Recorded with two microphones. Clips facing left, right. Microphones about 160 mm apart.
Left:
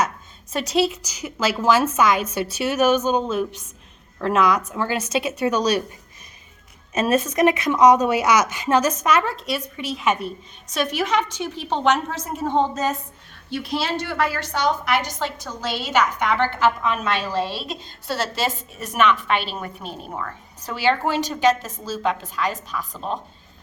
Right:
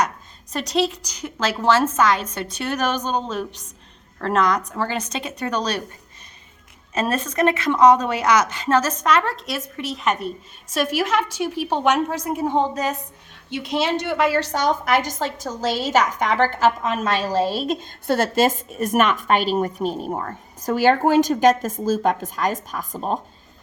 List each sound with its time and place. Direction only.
0.5 s a woman's voice: 5° left (ahead or behind)
7.0 s speech: 10° left (ahead or behind); by 14.3 s 20° right (ahead or behind)
14.5 s a woman's voice: 45° right (ahead or behind)